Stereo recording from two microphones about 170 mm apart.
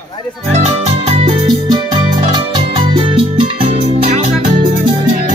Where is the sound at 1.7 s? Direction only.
25° right (ahead or behind).